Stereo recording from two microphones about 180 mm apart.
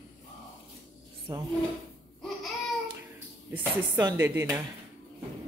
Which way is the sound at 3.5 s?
15° right (ahead or behind).